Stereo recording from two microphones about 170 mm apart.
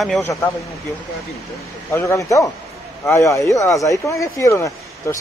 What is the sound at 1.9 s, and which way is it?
Speech, 20° left (ahead or behind).